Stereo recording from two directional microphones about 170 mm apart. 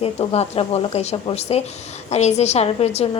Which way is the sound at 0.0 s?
35° left (ahead or behind).